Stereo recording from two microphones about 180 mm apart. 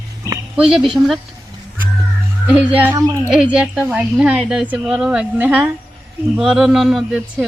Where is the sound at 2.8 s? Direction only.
15° right (ahead or behind).